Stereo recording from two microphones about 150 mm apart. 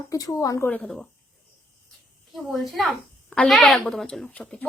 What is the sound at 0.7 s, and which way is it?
Speech, 5° left (ahead or behind).